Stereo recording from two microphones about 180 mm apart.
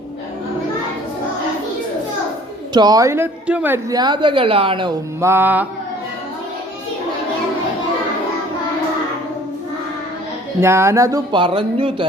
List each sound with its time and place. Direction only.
2.7 s a woman's voice: 20° right (ahead or behind)
5.2 s mantra: 10° right (ahead or behind)
10.6 s a woman's voice: 15° right (ahead or behind)